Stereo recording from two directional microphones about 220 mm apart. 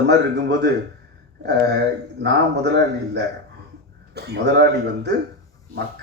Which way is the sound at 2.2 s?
50° right (ahead or behind).